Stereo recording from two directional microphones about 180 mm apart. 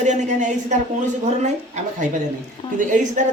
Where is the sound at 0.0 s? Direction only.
40° right (ahead or behind).